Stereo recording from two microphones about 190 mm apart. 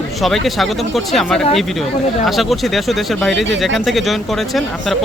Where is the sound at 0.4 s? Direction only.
Centre (ahead or behind).